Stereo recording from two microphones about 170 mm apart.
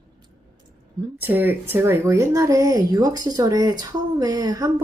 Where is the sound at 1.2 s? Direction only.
10° right (ahead or behind).